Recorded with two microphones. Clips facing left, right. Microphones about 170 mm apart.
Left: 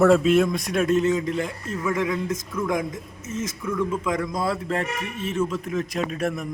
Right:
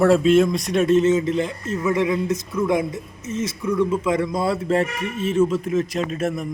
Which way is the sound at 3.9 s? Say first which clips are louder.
Right 5 dB; 5° right (ahead or behind).